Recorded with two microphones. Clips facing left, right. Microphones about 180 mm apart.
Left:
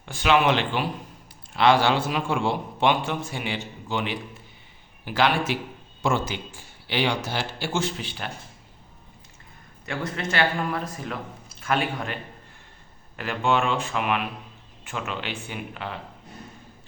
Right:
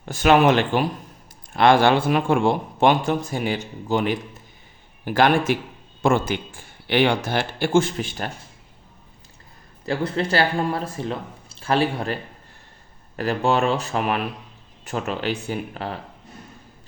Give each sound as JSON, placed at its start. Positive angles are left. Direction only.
{"t": 0.0, "sound": "speech", "side_deg": -45}
{"t": 9.8, "sound": "speech", "side_deg": -30}